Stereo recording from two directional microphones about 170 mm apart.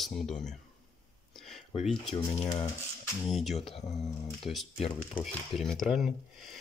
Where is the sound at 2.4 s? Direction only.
25° left (ahead or behind).